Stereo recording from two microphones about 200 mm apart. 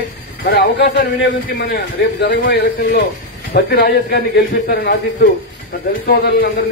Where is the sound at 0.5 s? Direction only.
55° left (ahead or behind).